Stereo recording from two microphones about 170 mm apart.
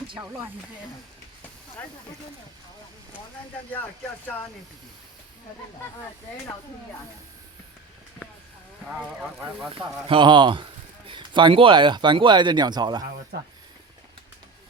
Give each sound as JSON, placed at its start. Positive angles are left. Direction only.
{"t": 8.9, "sound": "speech", "side_deg": -10}
{"t": 10.1, "sound": "speech", "side_deg": -25}
{"t": 13.3, "sound": "speech", "side_deg": -85}